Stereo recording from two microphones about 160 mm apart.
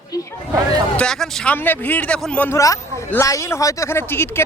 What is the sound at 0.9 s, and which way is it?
Speech, 5° left (ahead or behind).